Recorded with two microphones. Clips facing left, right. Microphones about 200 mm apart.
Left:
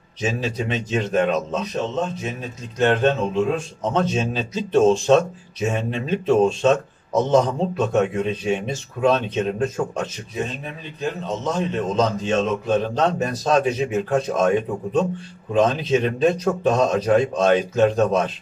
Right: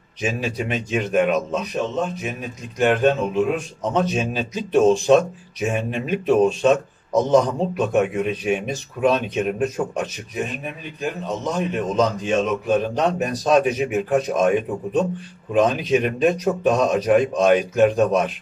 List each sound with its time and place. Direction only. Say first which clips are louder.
0.2 s a man's voice: even; 10° right (ahead or behind)